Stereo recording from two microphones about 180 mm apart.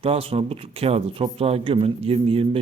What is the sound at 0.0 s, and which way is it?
Speech, 30° right (ahead or behind).